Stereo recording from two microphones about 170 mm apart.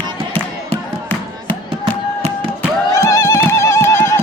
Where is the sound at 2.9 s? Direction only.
15° left (ahead or behind).